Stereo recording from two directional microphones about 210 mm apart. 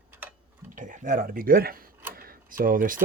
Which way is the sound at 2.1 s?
45° right (ahead or behind).